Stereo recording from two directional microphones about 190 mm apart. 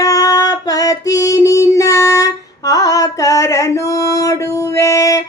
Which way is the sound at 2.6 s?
20° left (ahead or behind).